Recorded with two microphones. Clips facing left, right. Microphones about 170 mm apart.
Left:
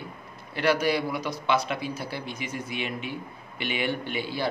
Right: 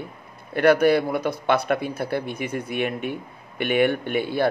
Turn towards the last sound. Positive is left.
turn(degrees=-55)  # may be behind; listen again after turning